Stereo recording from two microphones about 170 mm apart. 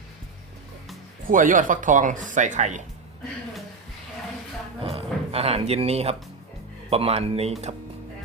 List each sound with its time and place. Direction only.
1.3 s speech: 50° right (ahead or behind)
4.8 s speech: 35° right (ahead or behind)